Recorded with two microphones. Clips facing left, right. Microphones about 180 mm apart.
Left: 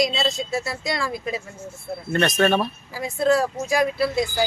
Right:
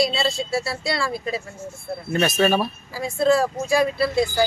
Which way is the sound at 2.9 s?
15° left (ahead or behind).